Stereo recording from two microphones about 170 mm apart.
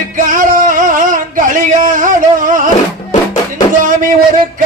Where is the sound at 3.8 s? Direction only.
50° right (ahead or behind).